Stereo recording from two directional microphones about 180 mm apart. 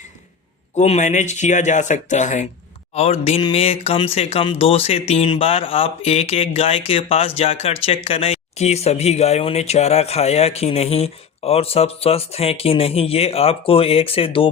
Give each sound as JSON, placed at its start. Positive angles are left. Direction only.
{"t": 0.8, "sound": "speech", "side_deg": 40}